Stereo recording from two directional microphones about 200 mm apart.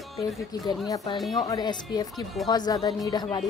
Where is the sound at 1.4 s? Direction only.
20° left (ahead or behind).